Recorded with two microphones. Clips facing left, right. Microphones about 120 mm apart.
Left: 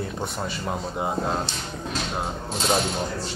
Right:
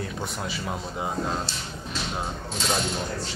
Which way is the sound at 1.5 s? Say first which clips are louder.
Left 2 dB; 35° right (ahead or behind).